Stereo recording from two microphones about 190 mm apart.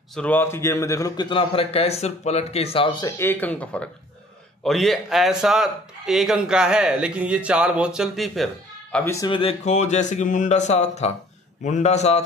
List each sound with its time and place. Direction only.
0.1 s a man's voice: 5° left (ahead or behind); by 3.1 s 25° left (ahead or behind)
3.2 s speech: 10° left (ahead or behind)
8.9 s speech: 15° left (ahead or behind)
9.3 s speech: 30° left (ahead or behind)